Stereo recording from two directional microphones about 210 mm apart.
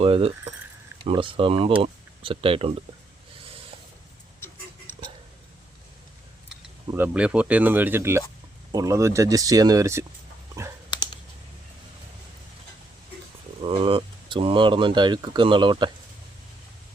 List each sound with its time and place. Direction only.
0.0 s speech: 25° right (ahead or behind)
4.4 s a sound: 10° left (ahead or behind)
6.9 s speech: 5° right (ahead or behind)
10.9 s computer keyboard: 20° left (ahead or behind)
13.6 s speech: 25° right (ahead or behind)